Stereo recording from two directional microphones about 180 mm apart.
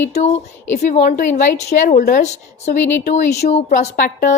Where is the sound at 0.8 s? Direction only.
45° left (ahead or behind).